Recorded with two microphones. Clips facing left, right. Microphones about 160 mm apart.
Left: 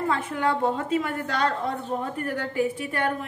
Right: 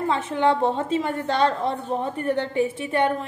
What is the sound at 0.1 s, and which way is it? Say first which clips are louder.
A woman's voice: right 7 dB; 25° right (ahead or behind).